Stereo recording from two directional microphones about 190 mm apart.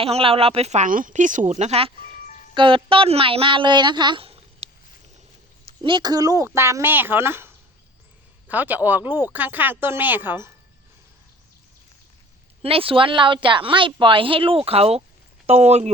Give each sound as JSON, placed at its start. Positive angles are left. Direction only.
{"t": 0.0, "sound": "a woman's voice", "side_deg": -30}
{"t": 12.6, "sound": "a woman's voice", "side_deg": -30}